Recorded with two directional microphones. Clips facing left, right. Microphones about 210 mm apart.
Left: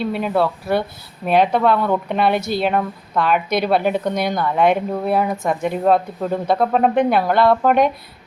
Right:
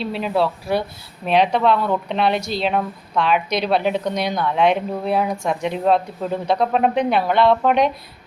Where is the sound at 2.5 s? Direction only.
55° left (ahead or behind).